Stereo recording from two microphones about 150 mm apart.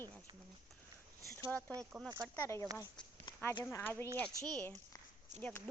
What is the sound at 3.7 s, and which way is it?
A woman's voice, 15° left (ahead or behind).